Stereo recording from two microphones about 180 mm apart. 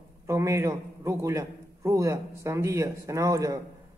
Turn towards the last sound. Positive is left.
turn(degrees=-20)  # may be behind; listen again after turning